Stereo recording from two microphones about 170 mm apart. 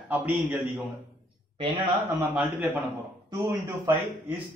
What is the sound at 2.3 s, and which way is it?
A man's voice, 10° right (ahead or behind).